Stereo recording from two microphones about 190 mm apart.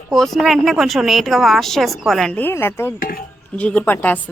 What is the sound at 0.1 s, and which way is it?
A woman's voice, centre (ahead or behind).